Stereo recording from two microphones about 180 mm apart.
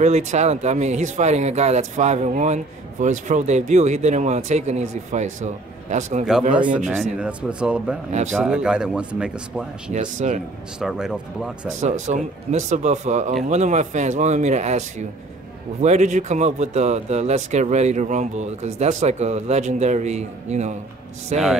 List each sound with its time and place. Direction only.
0.0 s speech: 40° right (ahead or behind)
7.2 s speech: 5° right (ahead or behind)
9.9 s speech: 40° right (ahead or behind)
10.8 s speech: 5° right (ahead or behind)
11.8 s speech: 40° right (ahead or behind)